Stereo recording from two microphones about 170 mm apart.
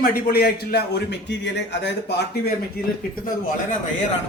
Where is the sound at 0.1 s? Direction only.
65° left (ahead or behind).